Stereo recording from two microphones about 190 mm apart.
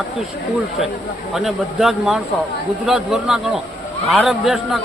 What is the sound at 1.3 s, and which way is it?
Speech, centre (ahead or behind).